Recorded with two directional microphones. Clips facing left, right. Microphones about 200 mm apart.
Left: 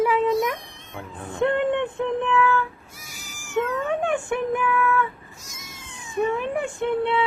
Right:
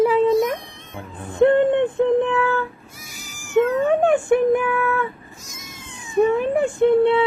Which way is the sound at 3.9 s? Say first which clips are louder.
Right 8 dB; 40° right (ahead or behind).